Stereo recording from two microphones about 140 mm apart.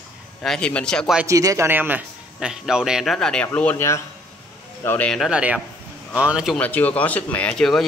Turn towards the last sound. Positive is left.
turn(degrees=5)  # may be behind; listen again after turning